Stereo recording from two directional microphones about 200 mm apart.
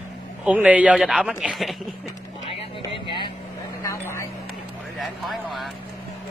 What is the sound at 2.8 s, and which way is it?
Speech, 25° left (ahead or behind).